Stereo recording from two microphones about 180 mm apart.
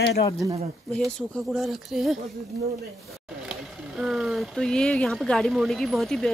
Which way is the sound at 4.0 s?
Centre (ahead or behind).